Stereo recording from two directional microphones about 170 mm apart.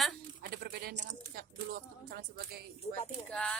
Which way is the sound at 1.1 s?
60° right (ahead or behind).